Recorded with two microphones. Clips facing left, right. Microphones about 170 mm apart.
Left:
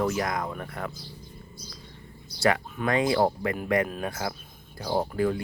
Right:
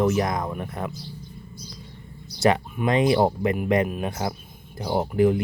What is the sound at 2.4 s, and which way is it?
Speech, 20° right (ahead or behind).